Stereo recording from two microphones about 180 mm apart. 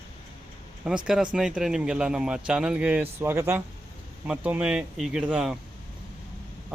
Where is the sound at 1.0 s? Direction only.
5° right (ahead or behind).